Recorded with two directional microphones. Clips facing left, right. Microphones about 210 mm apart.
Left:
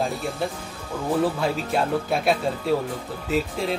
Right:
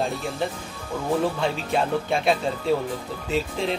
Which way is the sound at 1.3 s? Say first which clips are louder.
Even; 5° left (ahead or behind).